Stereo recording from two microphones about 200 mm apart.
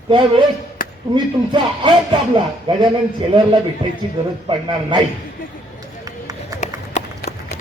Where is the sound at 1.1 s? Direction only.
25° right (ahead or behind).